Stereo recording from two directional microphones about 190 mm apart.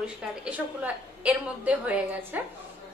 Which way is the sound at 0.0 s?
5° right (ahead or behind).